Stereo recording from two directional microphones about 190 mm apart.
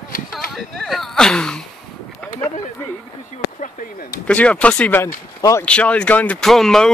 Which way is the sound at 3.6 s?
45° left (ahead or behind).